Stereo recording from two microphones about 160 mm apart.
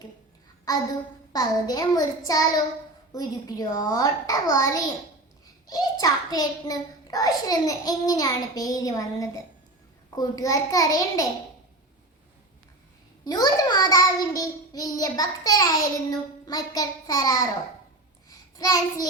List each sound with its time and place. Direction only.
0.7 s a child's voice: 25° left (ahead or behind)
13.2 s a child's voice: 25° left (ahead or behind)
18.3 s child singing: 25° left (ahead or behind)